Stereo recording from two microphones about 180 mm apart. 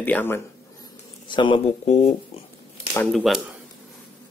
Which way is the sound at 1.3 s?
25° left (ahead or behind).